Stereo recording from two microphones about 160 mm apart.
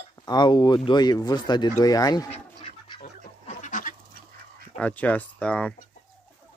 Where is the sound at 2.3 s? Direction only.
40° left (ahead or behind).